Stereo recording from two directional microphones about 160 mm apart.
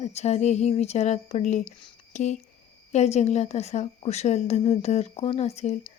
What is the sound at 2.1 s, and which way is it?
Speech, 45° left (ahead or behind).